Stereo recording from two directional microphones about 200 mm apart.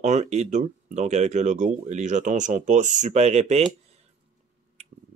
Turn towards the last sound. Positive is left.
turn(degrees=-35)  # may be behind; listen again after turning